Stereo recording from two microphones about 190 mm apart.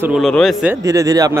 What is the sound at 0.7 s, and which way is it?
Speech, 20° right (ahead or behind).